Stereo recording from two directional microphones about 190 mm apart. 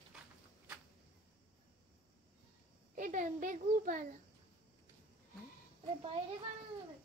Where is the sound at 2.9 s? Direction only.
40° right (ahead or behind).